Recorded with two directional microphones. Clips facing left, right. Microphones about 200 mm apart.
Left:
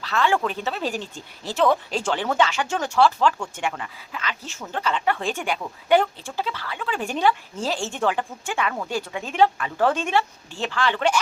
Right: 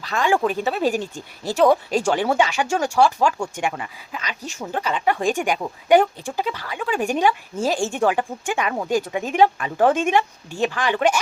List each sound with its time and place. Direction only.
0.0 s speech: 15° right (ahead or behind)